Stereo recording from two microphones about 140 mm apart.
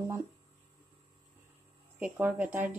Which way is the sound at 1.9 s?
15° right (ahead or behind).